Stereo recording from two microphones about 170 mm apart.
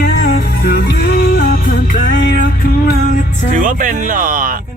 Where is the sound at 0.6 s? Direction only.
60° left (ahead or behind).